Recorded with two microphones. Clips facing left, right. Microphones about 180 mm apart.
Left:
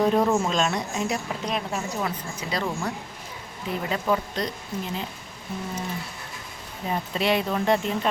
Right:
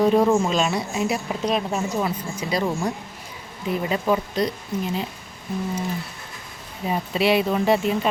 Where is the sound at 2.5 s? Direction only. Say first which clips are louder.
Right 4 dB; 15° right (ahead or behind).